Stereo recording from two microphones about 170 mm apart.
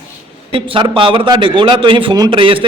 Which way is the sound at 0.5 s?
30° right (ahead or behind).